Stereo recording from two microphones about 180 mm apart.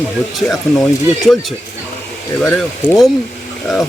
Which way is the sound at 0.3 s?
Centre (ahead or behind).